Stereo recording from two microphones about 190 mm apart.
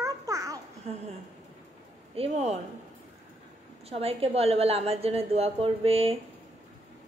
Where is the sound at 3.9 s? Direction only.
30° right (ahead or behind).